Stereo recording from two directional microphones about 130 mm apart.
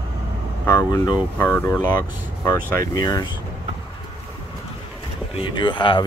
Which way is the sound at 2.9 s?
30° left (ahead or behind).